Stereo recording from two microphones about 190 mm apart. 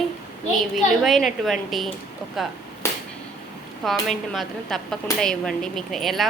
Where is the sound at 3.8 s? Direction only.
Centre (ahead or behind).